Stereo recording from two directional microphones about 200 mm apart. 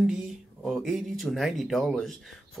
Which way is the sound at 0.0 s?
Centre (ahead or behind).